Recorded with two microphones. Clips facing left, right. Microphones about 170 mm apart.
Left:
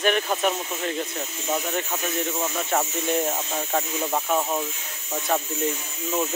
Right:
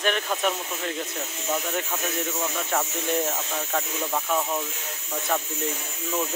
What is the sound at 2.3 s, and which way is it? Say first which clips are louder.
Speech: left 3 dB; 15° left (ahead or behind).